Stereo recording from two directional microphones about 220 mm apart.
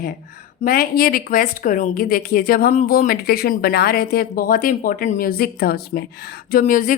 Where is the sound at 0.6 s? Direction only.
40° left (ahead or behind).